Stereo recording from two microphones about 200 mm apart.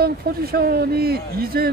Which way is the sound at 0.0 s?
50° right (ahead or behind).